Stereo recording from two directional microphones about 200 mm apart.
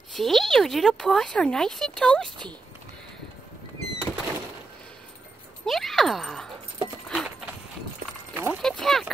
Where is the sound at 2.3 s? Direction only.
25° right (ahead or behind).